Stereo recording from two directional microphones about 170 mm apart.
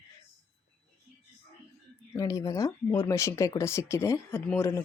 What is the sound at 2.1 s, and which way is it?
Speech, 20° left (ahead or behind).